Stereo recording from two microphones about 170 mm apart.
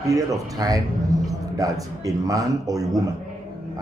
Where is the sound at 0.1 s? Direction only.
20° right (ahead or behind).